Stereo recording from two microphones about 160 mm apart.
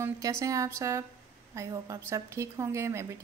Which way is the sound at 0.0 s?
20° right (ahead or behind).